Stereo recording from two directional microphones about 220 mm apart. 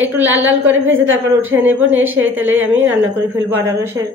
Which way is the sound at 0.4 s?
60° right (ahead or behind).